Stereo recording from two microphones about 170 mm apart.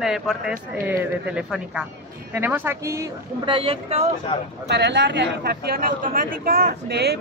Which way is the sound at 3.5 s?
30° right (ahead or behind).